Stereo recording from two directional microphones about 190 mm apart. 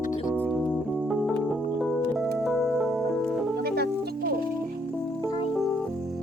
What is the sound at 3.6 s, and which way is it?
Music, 55° right (ahead or behind).